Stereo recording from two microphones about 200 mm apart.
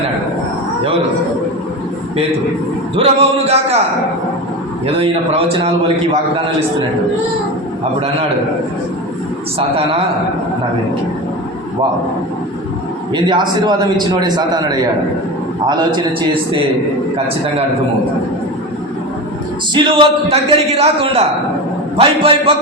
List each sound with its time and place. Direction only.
2.9 s a man's voice: 30° right (ahead or behind)
4.9 s a man's voice: 30° right (ahead or behind)
9.6 s a man's voice: 30° right (ahead or behind)
13.1 s a man's voice: 20° right (ahead or behind)
19.7 s a man's voice: 25° right (ahead or behind)